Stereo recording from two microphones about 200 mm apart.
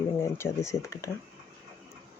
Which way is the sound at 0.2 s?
15° left (ahead or behind).